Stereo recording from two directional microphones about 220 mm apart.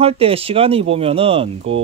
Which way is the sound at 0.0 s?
25° right (ahead or behind).